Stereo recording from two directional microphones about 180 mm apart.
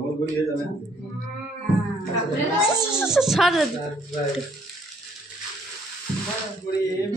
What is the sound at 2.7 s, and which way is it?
Speech, 5° right (ahead or behind).